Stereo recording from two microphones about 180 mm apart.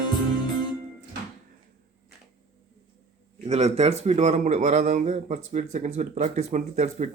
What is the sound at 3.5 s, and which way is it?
A man's voice, 35° right (ahead or behind).